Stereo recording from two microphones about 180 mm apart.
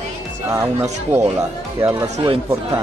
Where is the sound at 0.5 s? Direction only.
15° right (ahead or behind).